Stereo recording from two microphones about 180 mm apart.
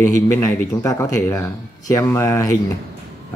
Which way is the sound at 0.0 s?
15° left (ahead or behind).